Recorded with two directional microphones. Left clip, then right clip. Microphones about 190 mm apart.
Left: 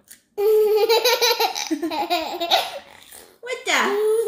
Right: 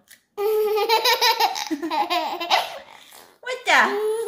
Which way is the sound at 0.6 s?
20° right (ahead or behind).